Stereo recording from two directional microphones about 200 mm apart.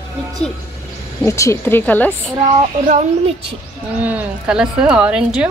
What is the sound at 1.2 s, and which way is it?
Speech, 15° left (ahead or behind).